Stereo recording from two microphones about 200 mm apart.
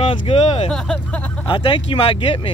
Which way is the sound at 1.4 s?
25° left (ahead or behind).